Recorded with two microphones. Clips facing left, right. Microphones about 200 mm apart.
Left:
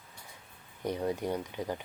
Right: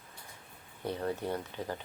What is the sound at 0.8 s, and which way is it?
Speech, 15° left (ahead or behind).